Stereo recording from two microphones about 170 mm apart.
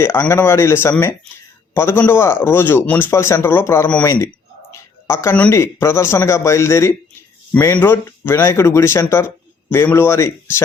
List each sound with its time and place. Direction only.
0.0 s a man's voice: 15° left (ahead or behind)